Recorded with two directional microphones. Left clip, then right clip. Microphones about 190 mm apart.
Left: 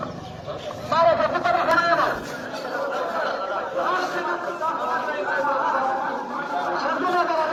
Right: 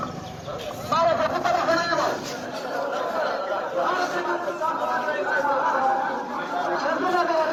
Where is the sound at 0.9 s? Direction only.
15° left (ahead or behind).